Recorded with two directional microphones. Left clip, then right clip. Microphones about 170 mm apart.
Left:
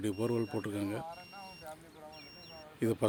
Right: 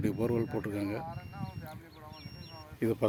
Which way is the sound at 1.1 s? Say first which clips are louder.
Right 2 dB; 60° left (ahead or behind).